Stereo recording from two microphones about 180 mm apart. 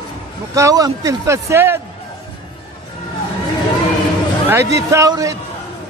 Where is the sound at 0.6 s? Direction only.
20° right (ahead or behind).